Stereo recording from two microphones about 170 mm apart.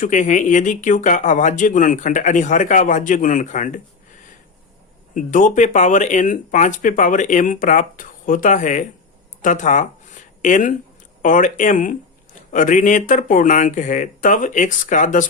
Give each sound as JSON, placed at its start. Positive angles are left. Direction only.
{"t": 0.0, "sound": "speech", "side_deg": 45}
{"t": 5.1, "sound": "speech", "side_deg": 50}